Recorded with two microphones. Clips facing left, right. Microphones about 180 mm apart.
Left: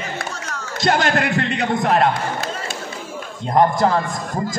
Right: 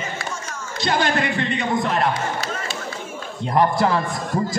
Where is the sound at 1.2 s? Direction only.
70° left (ahead or behind).